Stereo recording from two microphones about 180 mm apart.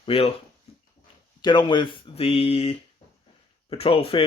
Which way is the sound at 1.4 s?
25° left (ahead or behind).